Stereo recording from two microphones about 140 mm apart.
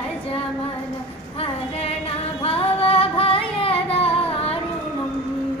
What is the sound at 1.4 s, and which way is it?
Female singing, 45° left (ahead or behind).